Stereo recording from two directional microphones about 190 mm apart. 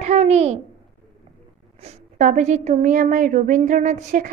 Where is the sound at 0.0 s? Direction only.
35° right (ahead or behind).